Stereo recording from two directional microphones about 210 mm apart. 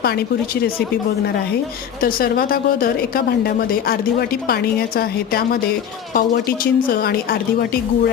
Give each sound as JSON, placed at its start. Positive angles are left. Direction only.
{"t": 0.0, "sound": "a woman's voice", "side_deg": 50}
{"t": 2.0, "sound": "a woman's voice", "side_deg": 45}